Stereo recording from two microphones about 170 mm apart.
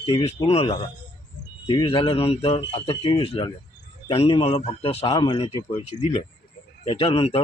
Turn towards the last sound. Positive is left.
turn(degrees=35)  # may be behind; listen again after turning